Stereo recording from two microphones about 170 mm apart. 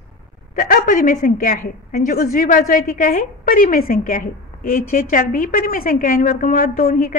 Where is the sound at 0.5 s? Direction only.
55° left (ahead or behind).